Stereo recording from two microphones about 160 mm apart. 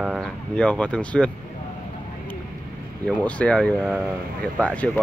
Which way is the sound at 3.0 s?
10° left (ahead or behind).